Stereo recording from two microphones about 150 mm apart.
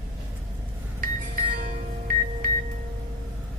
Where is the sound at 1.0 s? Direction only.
85° right.